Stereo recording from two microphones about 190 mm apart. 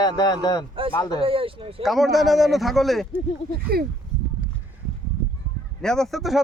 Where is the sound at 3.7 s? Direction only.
55° right (ahead or behind).